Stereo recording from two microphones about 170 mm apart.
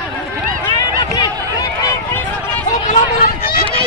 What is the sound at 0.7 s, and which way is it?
Run, 20° left (ahead or behind).